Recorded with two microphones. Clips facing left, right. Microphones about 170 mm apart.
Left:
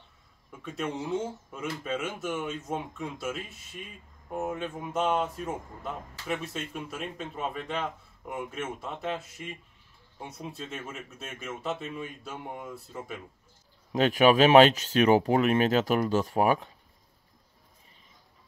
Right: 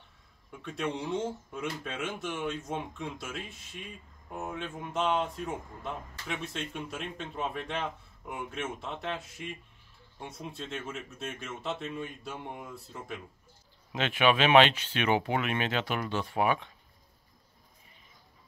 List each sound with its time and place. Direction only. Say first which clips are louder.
0.5 s speech: even; centre (ahead or behind)
13.9 s speech: left 6 dB; 40° left (ahead or behind)